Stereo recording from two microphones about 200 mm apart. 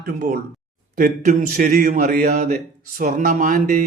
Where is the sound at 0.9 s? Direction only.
45° right (ahead or behind).